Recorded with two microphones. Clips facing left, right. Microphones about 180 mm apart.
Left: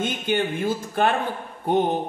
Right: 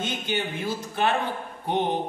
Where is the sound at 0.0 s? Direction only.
50° left (ahead or behind).